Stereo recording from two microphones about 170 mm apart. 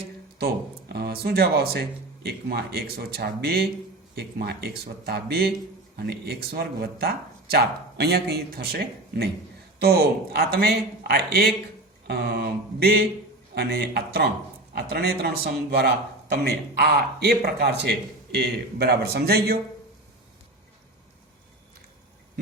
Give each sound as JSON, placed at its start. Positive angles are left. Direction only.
{"t": 0.9, "sound": "a man's voice", "side_deg": -70}